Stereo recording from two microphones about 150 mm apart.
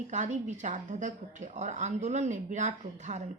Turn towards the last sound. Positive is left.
turn(degrees=-55)  # may be behind; listen again after turning